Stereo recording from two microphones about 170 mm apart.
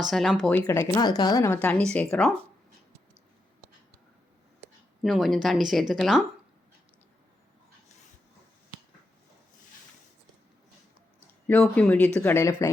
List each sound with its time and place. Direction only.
0.0 s speech: centre (ahead or behind)
0.6 s speech: 20° left (ahead or behind)
1.5 s speech: 5° left (ahead or behind)
5.0 s speech: centre (ahead or behind)
11.6 s speech: 10° left (ahead or behind)